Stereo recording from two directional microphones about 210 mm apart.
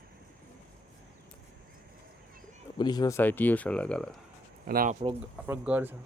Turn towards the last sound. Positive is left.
turn(degrees=-10)  # may be behind; listen again after turning